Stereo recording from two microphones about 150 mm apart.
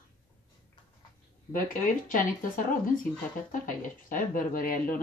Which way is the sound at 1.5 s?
65° left (ahead or behind).